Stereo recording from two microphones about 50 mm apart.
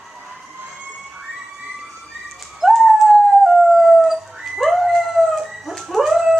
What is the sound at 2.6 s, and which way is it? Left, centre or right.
Howl, centre.